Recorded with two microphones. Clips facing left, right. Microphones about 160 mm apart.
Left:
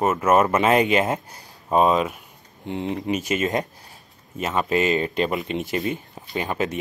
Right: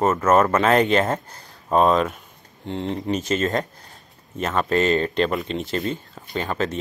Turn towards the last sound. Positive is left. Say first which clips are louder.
# even
turn(degrees=15)  # may be behind; listen again after turning